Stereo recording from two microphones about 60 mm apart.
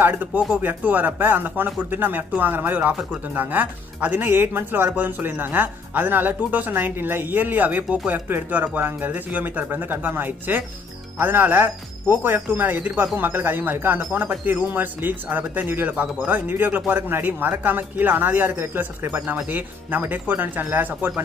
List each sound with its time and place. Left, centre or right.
0.0 s speech: right